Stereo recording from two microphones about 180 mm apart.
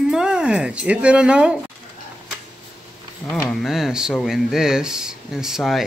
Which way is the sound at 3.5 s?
Centre (ahead or behind).